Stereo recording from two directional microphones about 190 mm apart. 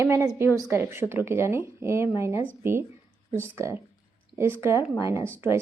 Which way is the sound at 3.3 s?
15° right (ahead or behind).